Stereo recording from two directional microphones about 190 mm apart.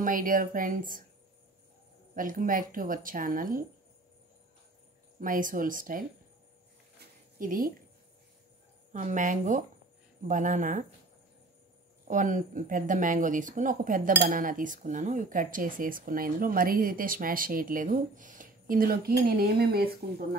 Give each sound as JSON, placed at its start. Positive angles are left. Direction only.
{"t": 0.0, "sound": "speech", "side_deg": -45}
{"t": 2.1, "sound": "speech", "side_deg": -45}
{"t": 5.2, "sound": "speech", "side_deg": -45}
{"t": 7.0, "sound": "a sound", "side_deg": -45}
{"t": 8.9, "sound": "speech", "side_deg": -40}
{"t": 12.1, "sound": "speech", "side_deg": -40}